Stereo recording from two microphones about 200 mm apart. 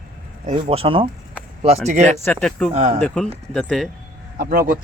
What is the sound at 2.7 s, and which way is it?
Speech, 35° right (ahead or behind).